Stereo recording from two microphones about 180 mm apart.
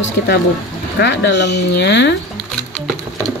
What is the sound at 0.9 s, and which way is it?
Speech, 75° left (ahead or behind).